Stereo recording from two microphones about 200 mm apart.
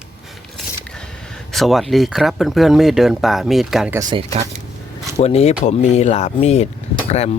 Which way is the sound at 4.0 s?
25° right (ahead or behind).